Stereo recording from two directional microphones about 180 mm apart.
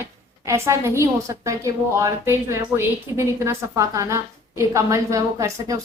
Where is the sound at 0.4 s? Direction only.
15° right (ahead or behind).